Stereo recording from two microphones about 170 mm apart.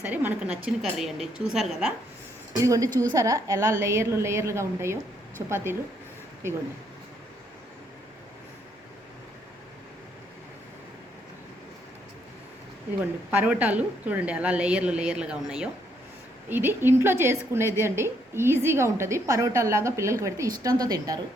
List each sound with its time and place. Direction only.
0.0 s a woman's voice: 10° right (ahead or behind)
2.6 s a woman's voice: 20° right (ahead or behind)
13.3 s a woman's voice: 10° right (ahead or behind)